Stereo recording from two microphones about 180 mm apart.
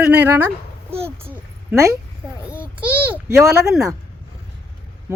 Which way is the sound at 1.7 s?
15° right (ahead or behind).